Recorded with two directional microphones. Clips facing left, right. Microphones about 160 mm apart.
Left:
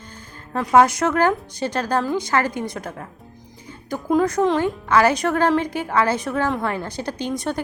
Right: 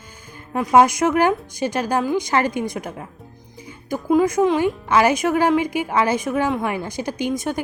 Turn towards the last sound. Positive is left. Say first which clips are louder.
# right 2 dB
turn(degrees=-10)  # may be behind; listen again after turning